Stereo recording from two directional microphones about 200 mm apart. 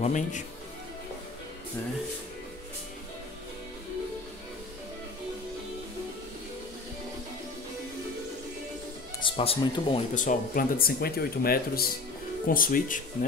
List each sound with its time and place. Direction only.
0.0 s speech: 40° left (ahead or behind)
9.2 s speech: 25° left (ahead or behind); by 13.0 s 45° left (ahead or behind)